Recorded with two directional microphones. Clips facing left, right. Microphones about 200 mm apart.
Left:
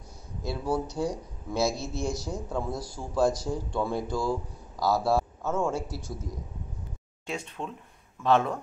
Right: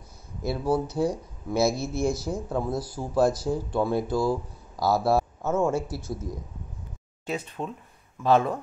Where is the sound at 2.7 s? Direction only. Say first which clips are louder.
Right 5 dB; 5° right (ahead or behind).